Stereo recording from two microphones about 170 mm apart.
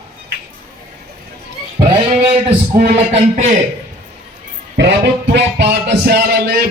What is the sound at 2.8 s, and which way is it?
Music, 40° right (ahead or behind).